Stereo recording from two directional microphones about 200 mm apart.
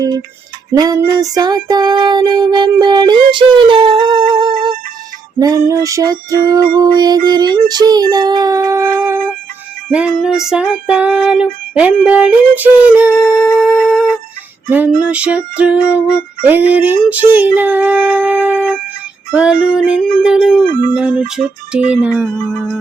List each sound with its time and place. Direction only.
0.7 s female singing: 15° right (ahead or behind)
5.4 s music: 15° right (ahead or behind)
7.3 s female singing: 20° right (ahead or behind)
9.9 s music: 5° right (ahead or behind)